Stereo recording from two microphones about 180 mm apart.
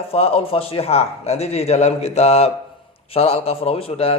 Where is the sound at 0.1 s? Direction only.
35° left (ahead or behind).